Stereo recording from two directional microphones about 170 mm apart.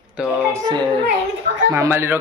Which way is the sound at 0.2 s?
5° right (ahead or behind).